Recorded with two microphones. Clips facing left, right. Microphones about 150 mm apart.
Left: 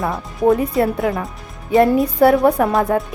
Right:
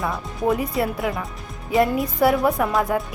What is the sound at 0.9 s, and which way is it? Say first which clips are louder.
A woman's voice: left 5 dB; 25° left (ahead or behind).